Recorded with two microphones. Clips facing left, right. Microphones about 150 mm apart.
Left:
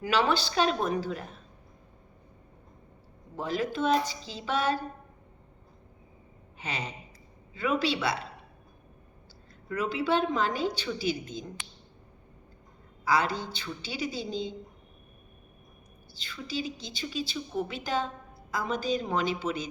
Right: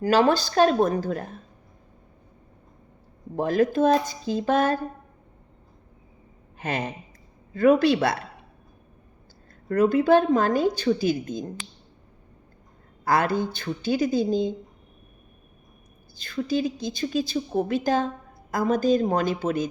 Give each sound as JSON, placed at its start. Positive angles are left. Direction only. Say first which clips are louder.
{"t": 0.0, "sound": "a woman's voice", "louder": "right 7 dB", "side_deg": -45}
{"t": 3.3, "sound": "a woman's voice", "louder": "right 9 dB", "side_deg": -50}
{"t": 6.6, "sound": "a woman's voice", "louder": "right 8 dB", "side_deg": -50}
{"t": 9.6, "sound": "a woman's voice", "louder": "right 10 dB", "side_deg": -50}
{"t": 13.1, "sound": "a woman's voice", "louder": "right 5 dB", "side_deg": -50}
{"t": 16.1, "sound": "a woman's voice", "louder": "right 10 dB", "side_deg": -45}